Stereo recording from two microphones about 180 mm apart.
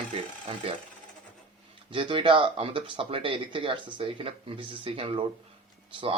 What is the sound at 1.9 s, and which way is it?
Speech, 30° right (ahead or behind).